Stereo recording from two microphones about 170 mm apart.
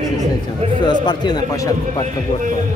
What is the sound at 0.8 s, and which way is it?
Speech, 25° left (ahead or behind).